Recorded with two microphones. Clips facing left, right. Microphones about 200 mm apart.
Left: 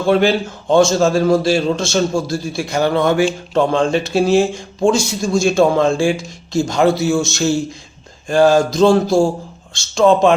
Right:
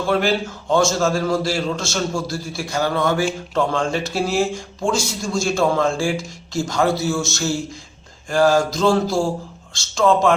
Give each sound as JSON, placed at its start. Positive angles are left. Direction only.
{"t": 0.1, "sound": "speech", "side_deg": 20}